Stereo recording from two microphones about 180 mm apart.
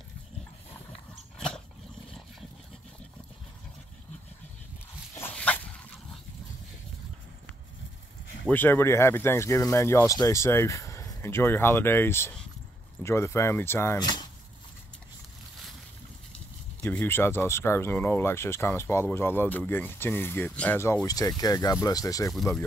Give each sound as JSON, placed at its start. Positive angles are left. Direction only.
{"t": 5.1, "sound": "dog", "side_deg": 10}
{"t": 8.5, "sound": "speech", "side_deg": 10}
{"t": 16.8, "sound": "speech", "side_deg": 10}
{"t": 22.3, "sound": "speech", "side_deg": 0}